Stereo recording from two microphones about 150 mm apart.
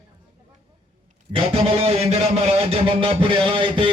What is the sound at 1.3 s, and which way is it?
A man's voice, 40° right (ahead or behind).